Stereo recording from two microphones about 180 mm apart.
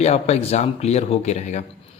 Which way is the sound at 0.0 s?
35° left (ahead or behind).